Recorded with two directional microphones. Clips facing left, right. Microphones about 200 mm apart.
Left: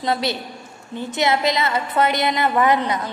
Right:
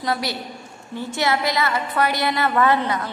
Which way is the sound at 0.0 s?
25° left (ahead or behind).